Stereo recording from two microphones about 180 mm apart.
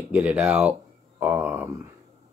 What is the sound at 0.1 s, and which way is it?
Speech, 10° right (ahead or behind).